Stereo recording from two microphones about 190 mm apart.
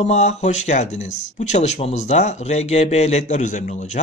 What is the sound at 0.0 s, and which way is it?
Speech, 35° left (ahead or behind).